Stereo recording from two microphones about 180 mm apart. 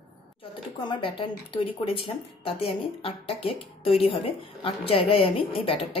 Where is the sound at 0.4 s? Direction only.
25° left (ahead or behind).